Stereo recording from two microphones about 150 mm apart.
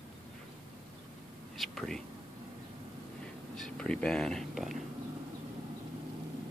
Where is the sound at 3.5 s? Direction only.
5° left (ahead or behind).